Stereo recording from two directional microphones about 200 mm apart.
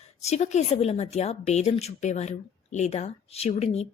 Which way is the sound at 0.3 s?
35° left (ahead or behind).